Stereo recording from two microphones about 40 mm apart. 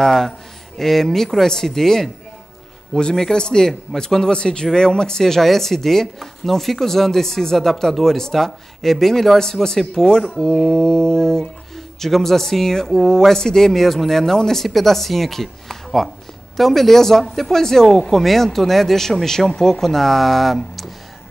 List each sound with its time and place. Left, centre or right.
0.0 s speech: centre